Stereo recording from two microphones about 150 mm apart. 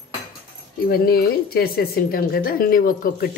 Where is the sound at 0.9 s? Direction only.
90° left.